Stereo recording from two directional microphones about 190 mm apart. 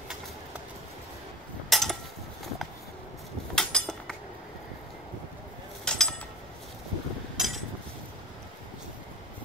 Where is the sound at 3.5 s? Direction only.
5° left (ahead or behind).